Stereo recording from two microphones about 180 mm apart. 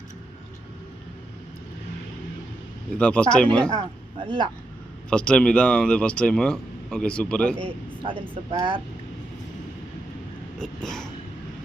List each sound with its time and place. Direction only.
3.0 s speech: 5° left (ahead or behind)
4.2 s speech: 25° right (ahead or behind)
5.1 s speech: 5° left (ahead or behind)
8.4 s speech: 30° right (ahead or behind)
10.6 s speech: 5° left (ahead or behind)